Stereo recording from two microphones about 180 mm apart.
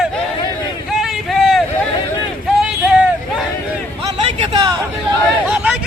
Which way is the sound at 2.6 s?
5° right (ahead or behind).